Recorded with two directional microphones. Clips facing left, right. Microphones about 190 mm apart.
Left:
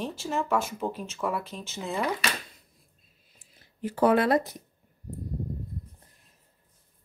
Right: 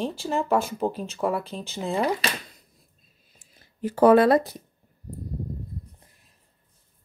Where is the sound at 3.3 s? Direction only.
40° right (ahead or behind).